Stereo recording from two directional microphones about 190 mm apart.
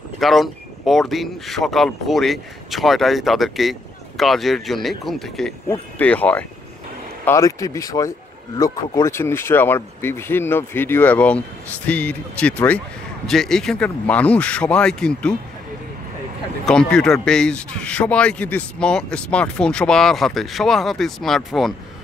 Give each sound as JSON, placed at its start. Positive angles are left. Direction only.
{"t": 0.2, "sound": "speech", "side_deg": 0}
{"t": 16.6, "sound": "speech", "side_deg": 5}